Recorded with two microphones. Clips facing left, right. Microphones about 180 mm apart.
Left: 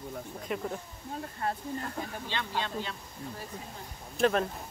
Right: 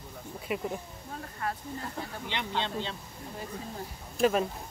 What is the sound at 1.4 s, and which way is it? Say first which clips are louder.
Speech: left 1 dB; 30° left (ahead or behind).